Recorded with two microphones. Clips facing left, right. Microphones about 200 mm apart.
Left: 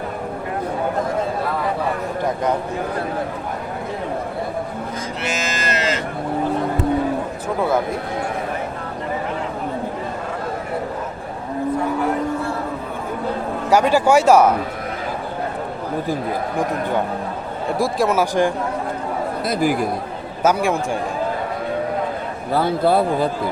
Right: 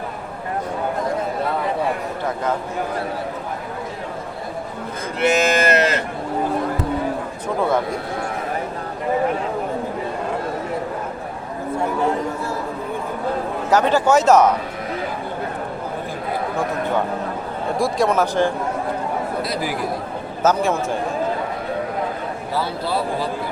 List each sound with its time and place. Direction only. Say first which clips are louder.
5.2 s a sound: right 10 dB; 60° right (ahead or behind)
13.7 s speech: left 1 dB; 10° left (ahead or behind)
17.7 s speech: even; centre (ahead or behind)
19.5 s speech: left 5 dB; 50° left (ahead or behind)
20.4 s speech: even; 10° left (ahead or behind)
22.5 s speech: left 7 dB; 55° left (ahead or behind)